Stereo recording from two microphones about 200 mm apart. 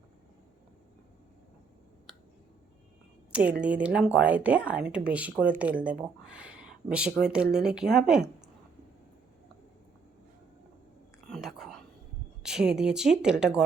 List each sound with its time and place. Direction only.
3.6 s speech: 5° right (ahead or behind)
11.3 s whispering: centre (ahead or behind)
12.4 s speech: 5° right (ahead or behind)